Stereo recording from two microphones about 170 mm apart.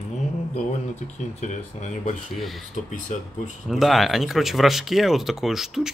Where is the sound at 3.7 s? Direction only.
Centre (ahead or behind).